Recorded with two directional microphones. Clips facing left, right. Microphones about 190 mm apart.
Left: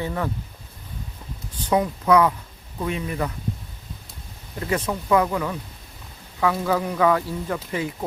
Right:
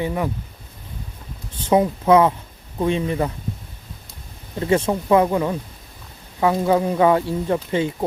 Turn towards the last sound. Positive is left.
turn(degrees=-25)  # may be behind; listen again after turning